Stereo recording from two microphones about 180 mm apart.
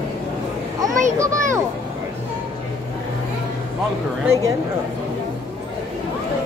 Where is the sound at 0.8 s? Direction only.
15° right (ahead or behind).